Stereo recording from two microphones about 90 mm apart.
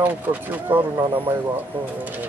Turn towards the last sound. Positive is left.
turn(degrees=-20)  # may be behind; listen again after turning